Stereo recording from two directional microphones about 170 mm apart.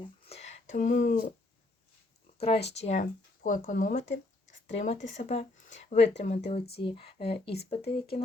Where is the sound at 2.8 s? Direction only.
45° left (ahead or behind).